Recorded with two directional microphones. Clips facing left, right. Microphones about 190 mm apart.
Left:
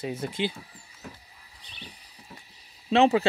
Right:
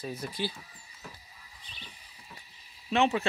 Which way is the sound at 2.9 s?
35° left (ahead or behind).